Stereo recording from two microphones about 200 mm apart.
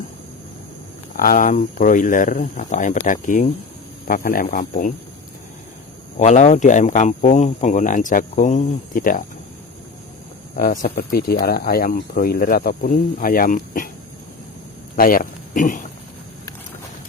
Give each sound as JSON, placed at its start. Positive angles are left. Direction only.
{"t": 1.1, "sound": "speech", "side_deg": 45}
{"t": 6.1, "sound": "speech", "side_deg": 35}
{"t": 10.5, "sound": "speech", "side_deg": 40}
{"t": 14.9, "sound": "speech", "side_deg": 45}